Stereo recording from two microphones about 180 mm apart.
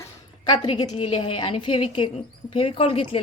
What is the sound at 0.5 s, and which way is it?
A woman's voice, 25° left (ahead or behind).